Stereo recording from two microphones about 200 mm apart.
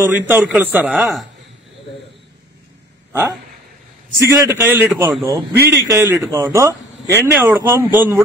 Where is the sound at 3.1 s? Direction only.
10° right (ahead or behind).